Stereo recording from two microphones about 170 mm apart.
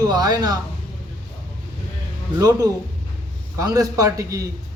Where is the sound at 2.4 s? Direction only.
20° right (ahead or behind).